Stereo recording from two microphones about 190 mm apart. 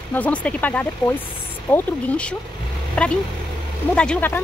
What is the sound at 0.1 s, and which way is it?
Speech, 10° left (ahead or behind).